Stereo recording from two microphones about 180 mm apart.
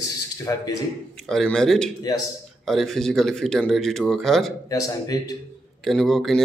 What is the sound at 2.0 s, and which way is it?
Speech, 20° left (ahead or behind).